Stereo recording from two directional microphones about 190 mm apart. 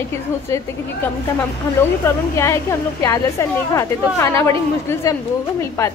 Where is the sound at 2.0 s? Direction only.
15° left (ahead or behind).